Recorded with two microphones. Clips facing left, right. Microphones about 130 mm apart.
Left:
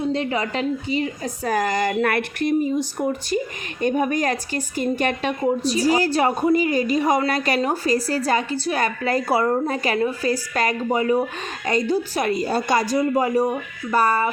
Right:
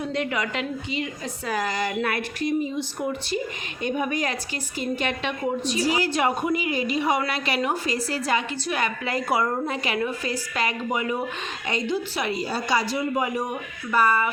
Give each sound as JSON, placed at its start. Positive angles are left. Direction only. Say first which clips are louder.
{"t": 0.0, "sound": "a woman's voice", "louder": "left 4 dB", "side_deg": 30}
{"t": 2.7, "sound": "a woman's voice", "louder": "left 5 dB", "side_deg": 45}